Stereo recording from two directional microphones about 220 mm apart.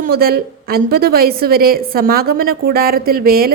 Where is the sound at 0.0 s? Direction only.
45° right (ahead or behind).